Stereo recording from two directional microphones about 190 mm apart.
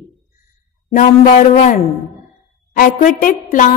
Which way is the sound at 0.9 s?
45° left (ahead or behind).